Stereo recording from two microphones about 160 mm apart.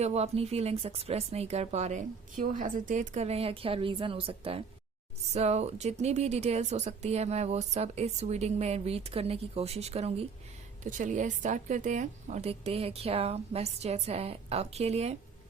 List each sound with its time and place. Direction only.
0.0 s speech: 40° right (ahead or behind)
10.8 s speech: 50° right (ahead or behind)